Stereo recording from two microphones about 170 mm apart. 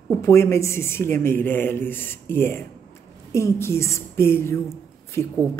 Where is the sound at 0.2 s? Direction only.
15° left (ahead or behind).